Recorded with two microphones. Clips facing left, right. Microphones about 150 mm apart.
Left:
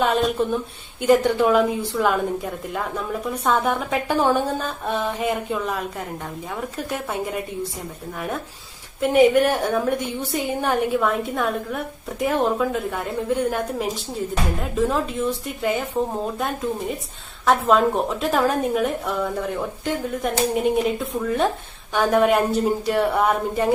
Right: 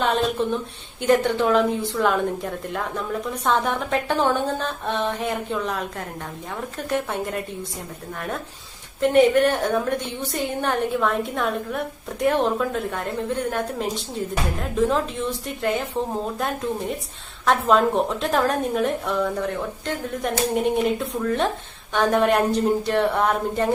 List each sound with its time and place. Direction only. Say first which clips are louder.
0.0 s a woman's voice: left 2 dB; 5° left (ahead or behind)
9.0 s a woman's voice: left 1 dB; 10° left (ahead or behind)